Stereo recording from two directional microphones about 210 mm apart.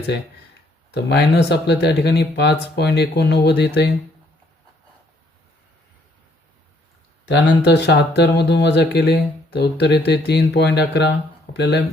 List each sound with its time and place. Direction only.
0.9 s speech: 55° left (ahead or behind)
7.3 s speech: 55° left (ahead or behind)